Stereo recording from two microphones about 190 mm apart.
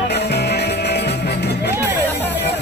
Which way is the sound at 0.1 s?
60° left (ahead or behind).